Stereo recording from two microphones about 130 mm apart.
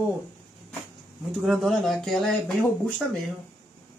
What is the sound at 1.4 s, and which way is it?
Speech, centre (ahead or behind).